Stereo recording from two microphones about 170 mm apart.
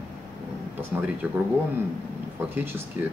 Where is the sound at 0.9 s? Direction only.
5° right (ahead or behind).